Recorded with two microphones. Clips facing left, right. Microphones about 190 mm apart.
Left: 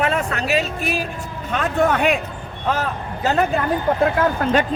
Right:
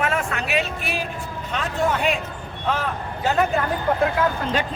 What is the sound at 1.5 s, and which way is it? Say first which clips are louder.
Speech: left 5 dB; 55° left (ahead or behind).